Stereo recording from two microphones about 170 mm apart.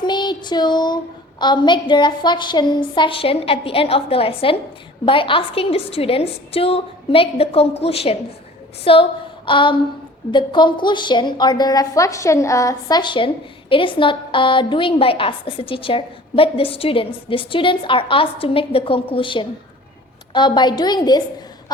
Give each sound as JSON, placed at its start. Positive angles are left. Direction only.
{"t": 0.0, "sound": "child singing", "side_deg": 25}
{"t": 1.4, "sound": "a woman's voice", "side_deg": 25}